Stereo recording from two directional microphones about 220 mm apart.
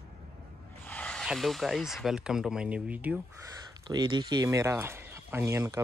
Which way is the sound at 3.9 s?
20° right (ahead or behind).